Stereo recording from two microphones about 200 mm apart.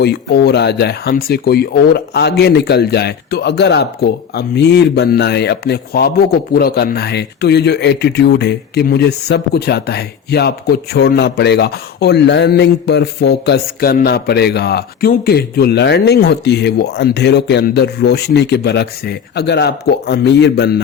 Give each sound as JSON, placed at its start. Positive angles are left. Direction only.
{"t": 0.0, "sound": "speech", "side_deg": 55}